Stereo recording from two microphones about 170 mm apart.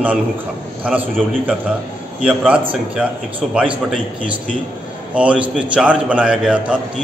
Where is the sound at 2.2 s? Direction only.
5° right (ahead or behind).